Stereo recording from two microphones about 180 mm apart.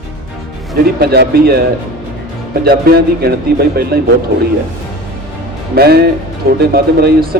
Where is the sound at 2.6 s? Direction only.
60° right (ahead or behind).